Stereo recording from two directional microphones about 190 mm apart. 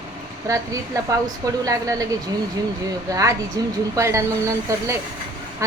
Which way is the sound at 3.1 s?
15° right (ahead or behind).